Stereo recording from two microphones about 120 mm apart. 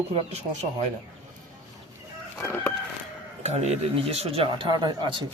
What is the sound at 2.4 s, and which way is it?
Chicken, 20° left (ahead or behind).